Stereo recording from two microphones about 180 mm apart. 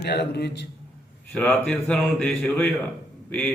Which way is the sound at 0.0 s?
65° left (ahead or behind).